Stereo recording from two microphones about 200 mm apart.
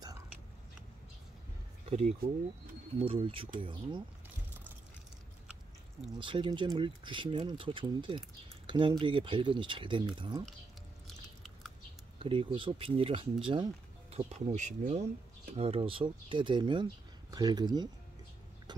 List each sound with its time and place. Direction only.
1.9 s speech: 30° right (ahead or behind)
6.1 s speech: 25° right (ahead or behind)
11.1 s chewing: centre (ahead or behind)
12.2 s speech: 25° right (ahead or behind)
18.7 s a sound: 20° right (ahead or behind)